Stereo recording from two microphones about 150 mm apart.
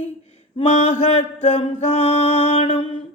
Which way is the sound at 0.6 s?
45° left (ahead or behind).